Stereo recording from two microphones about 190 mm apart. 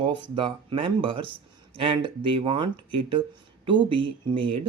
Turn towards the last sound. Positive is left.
turn(degrees=-25)  # may be behind; listen again after turning